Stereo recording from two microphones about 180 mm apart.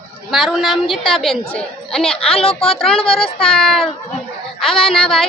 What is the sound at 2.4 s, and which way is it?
Speech, 30° left (ahead or behind).